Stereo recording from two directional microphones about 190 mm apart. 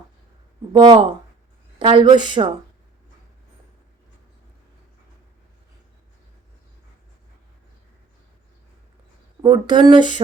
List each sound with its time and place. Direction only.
0.7 s speech: 25° right (ahead or behind)
9.4 s speech: 20° right (ahead or behind)